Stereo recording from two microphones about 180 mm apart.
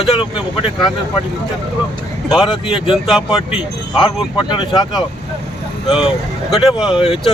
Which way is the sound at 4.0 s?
25° left (ahead or behind).